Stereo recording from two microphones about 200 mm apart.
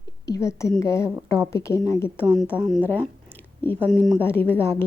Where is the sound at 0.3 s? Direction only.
15° left (ahead or behind).